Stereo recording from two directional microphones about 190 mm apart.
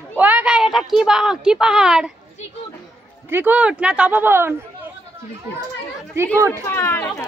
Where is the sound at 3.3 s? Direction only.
10° right (ahead or behind).